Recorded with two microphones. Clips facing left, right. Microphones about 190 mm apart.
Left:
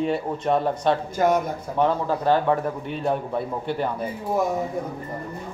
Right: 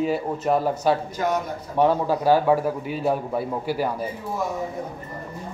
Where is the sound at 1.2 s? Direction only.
50° left (ahead or behind).